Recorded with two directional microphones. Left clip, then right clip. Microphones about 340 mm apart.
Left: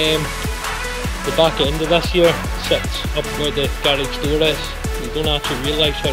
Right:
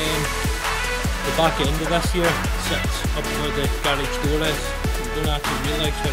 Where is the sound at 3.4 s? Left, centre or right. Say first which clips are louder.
Left 6 dB; centre.